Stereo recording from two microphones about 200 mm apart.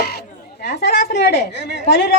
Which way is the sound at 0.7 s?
55° left (ahead or behind).